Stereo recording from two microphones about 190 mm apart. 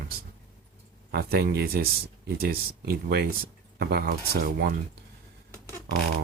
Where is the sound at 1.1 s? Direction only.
55° right (ahead or behind).